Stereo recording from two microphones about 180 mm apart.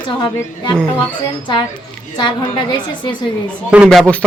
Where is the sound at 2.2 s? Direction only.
25° left (ahead or behind).